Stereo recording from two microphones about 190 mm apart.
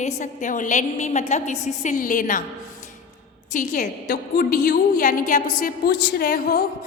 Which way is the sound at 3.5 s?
45° left (ahead or behind).